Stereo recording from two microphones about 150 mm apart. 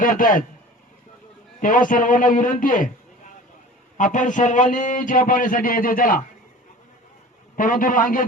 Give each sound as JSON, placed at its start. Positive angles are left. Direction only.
{"t": 0.0, "sound": "a man's voice", "side_deg": 65}
{"t": 1.6, "sound": "a man's voice", "side_deg": 60}
{"t": 3.9, "sound": "a man's voice", "side_deg": 60}
{"t": 7.5, "sound": "a man's voice", "side_deg": 65}